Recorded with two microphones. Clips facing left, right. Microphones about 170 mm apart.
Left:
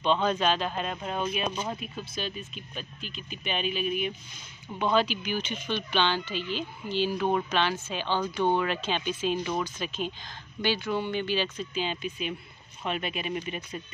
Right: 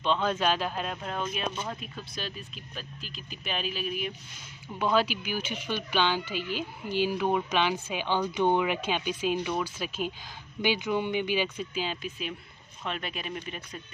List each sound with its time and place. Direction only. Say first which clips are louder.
0.0 s speech: left 2 dB; centre (ahead or behind)